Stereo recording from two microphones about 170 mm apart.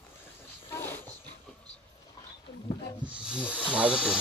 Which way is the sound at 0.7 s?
15° left (ahead or behind).